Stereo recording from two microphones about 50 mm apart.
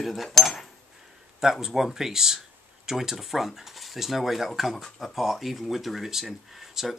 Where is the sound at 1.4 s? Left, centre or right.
Centre.